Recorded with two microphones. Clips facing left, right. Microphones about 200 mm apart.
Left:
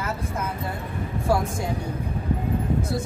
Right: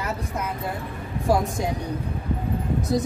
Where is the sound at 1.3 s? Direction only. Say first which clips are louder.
Right 2 dB; 15° right (ahead or behind).